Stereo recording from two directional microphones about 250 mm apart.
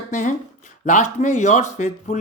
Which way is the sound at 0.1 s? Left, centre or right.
Left.